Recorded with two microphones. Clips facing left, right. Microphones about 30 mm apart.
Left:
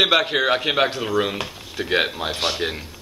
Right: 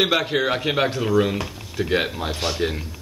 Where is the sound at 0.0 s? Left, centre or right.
Centre.